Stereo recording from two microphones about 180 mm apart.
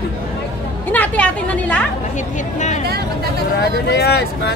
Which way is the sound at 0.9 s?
10° left (ahead or behind).